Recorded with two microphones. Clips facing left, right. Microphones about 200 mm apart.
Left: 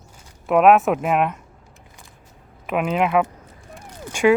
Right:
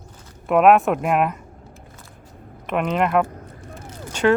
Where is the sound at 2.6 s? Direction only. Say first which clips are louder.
Even; 5° left (ahead or behind).